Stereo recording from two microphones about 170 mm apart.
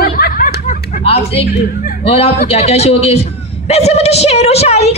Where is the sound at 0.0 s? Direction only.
65° left (ahead or behind).